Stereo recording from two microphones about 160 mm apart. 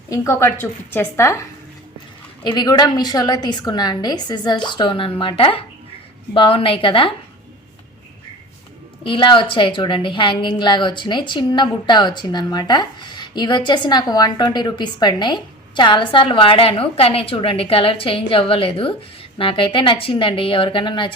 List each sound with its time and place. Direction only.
0.1 s a woman's voice: 15° left (ahead or behind)
2.6 s a woman's voice: 25° left (ahead or behind)
9.0 s a woman's voice: 30° left (ahead or behind)